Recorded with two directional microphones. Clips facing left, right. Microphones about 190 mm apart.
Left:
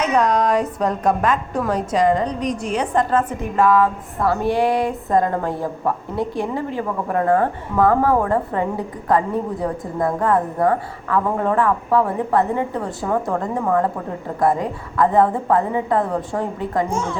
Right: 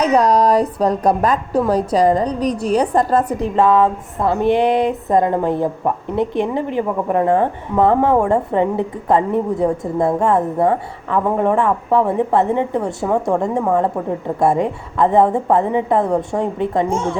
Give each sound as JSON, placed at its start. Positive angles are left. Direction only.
{"t": 0.0, "sound": "a woman's voice", "side_deg": -35}
{"t": 3.5, "sound": "speech", "side_deg": -25}